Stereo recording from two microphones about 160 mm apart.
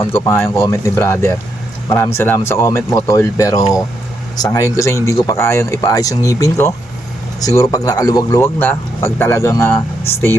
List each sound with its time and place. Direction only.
0.3 s speech: 15° left (ahead or behind)